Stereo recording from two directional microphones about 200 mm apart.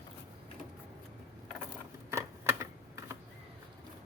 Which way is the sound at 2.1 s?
15° right (ahead or behind).